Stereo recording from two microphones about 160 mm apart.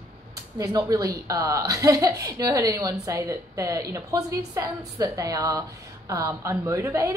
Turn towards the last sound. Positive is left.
turn(degrees=-20)  # may be behind; listen again after turning